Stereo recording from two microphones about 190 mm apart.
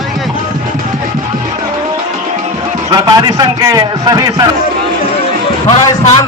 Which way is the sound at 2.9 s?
20° right (ahead or behind).